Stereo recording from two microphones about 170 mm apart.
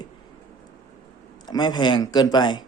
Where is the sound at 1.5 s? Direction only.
25° left (ahead or behind).